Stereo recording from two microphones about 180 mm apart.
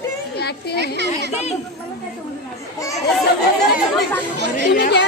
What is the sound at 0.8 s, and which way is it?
Speech, 70° right (ahead or behind).